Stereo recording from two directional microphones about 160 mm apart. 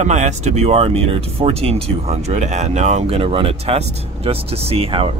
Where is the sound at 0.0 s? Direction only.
45° right (ahead or behind).